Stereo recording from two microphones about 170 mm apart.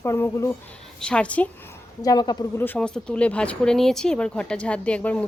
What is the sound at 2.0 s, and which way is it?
Speech, 20° left (ahead or behind).